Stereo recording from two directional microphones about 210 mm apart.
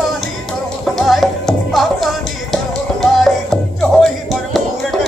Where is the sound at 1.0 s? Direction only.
Centre (ahead or behind).